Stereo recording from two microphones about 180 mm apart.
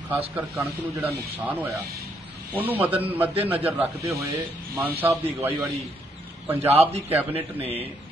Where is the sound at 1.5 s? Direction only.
10° right (ahead or behind).